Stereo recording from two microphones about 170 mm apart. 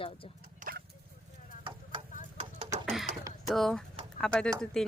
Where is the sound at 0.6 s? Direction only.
60° right (ahead or behind).